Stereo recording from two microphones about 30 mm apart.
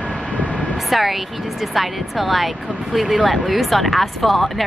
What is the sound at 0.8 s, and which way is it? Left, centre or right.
Speech, centre.